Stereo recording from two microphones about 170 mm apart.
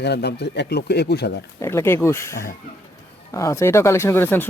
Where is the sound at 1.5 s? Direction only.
15° left (ahead or behind).